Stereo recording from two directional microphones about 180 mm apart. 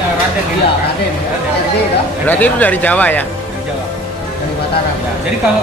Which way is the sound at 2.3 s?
10° left (ahead or behind).